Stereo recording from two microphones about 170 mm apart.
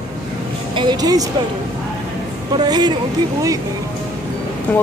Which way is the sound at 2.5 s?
25° right (ahead or behind).